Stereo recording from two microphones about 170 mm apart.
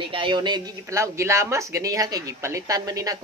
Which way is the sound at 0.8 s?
15° right (ahead or behind).